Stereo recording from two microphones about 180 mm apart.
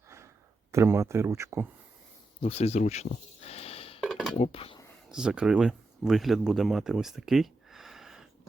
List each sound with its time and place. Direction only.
0.7 s speech: 15° right (ahead or behind)
2.4 s speech: 35° left (ahead or behind)
4.0 s a sound: centre (ahead or behind)
4.4 s speech: 35° left (ahead or behind)
5.0 s speech: 5° right (ahead or behind)